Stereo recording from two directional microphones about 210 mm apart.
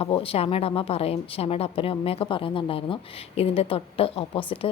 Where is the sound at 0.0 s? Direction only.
25° left (ahead or behind).